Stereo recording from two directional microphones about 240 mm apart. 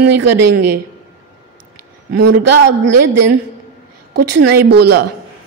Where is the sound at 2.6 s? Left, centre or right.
Right.